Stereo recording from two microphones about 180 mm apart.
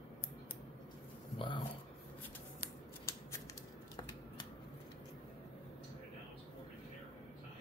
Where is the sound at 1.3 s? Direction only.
25° left (ahead or behind).